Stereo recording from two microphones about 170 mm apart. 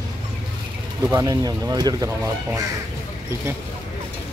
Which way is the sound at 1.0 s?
20° right (ahead or behind).